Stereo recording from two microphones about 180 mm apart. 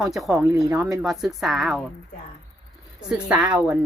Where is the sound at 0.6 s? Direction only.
20° right (ahead or behind).